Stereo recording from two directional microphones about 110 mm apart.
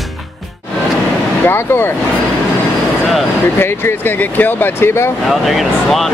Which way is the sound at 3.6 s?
15° left (ahead or behind).